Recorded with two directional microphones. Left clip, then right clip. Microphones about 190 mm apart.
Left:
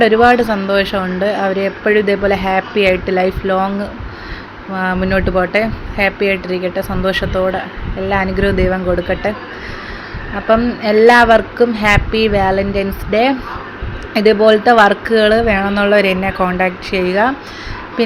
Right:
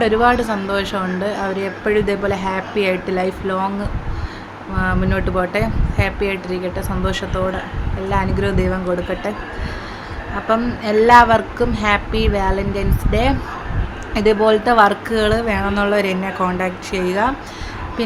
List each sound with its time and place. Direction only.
0.0 s speech: 20° left (ahead or behind)
4.8 s speech: 20° left (ahead or behind)
10.5 s speech: 20° left (ahead or behind)